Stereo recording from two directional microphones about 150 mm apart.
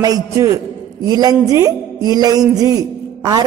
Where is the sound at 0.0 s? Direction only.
25° right (ahead or behind).